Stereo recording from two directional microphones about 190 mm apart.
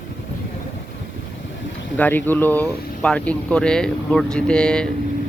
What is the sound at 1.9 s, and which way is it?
Speech, 10° left (ahead or behind).